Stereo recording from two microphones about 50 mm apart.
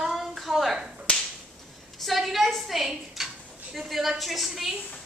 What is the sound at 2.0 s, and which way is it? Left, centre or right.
A woman's voice, centre.